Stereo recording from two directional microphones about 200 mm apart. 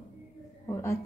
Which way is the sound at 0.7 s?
15° left (ahead or behind).